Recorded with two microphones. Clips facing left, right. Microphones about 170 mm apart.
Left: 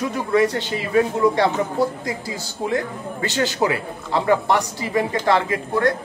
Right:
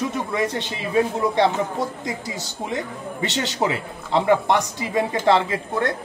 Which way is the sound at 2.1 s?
20° right (ahead or behind).